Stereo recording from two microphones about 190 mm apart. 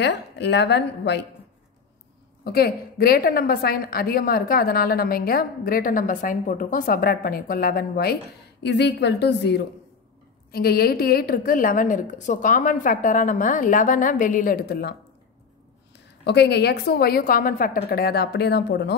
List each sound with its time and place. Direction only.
0.0 s a woman's voice: 65° left (ahead or behind)
2.4 s a woman's voice: 55° left (ahead or behind)
8.6 s a woman's voice: 65° left (ahead or behind)
16.3 s a woman's voice: 60° left (ahead or behind)